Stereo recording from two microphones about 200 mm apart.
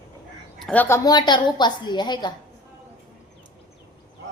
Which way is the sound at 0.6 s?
5° left (ahead or behind).